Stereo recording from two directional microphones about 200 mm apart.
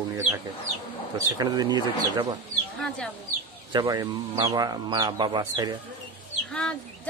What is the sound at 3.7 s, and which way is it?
Speech, 20° right (ahead or behind).